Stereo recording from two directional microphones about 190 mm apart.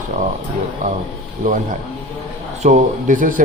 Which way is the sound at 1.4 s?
45° right (ahead or behind).